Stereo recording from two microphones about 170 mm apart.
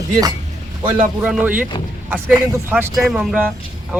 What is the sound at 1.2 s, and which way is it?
Speech, 5° right (ahead or behind).